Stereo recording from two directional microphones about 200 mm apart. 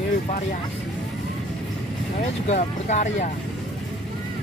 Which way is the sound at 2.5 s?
35° left (ahead or behind).